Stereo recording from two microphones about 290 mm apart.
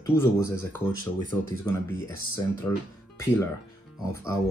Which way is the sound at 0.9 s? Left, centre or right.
Right.